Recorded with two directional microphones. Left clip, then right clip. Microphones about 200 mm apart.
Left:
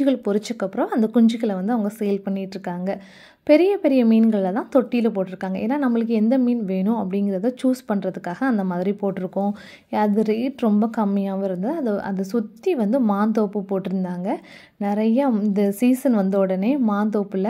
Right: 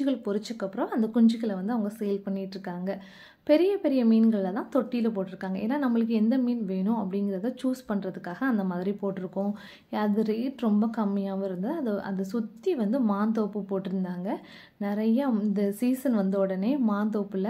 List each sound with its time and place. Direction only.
0.0 s a woman's voice: 35° left (ahead or behind)